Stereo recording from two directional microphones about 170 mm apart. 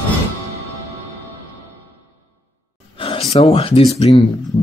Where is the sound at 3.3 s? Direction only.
35° left (ahead or behind).